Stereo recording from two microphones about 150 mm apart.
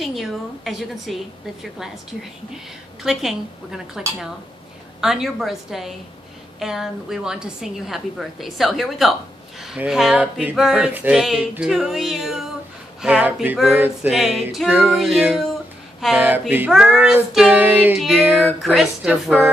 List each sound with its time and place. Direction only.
0.0 s a woman's voice: centre (ahead or behind)
5.0 s a woman's voice: centre (ahead or behind)
13.0 s child singing: 10° right (ahead or behind)
14.0 s a woman's voice: 5° right (ahead or behind)
16.2 s child singing: 10° right (ahead or behind)
18.2 s child singing: 15° right (ahead or behind)
18.6 s a woman's voice: centre (ahead or behind)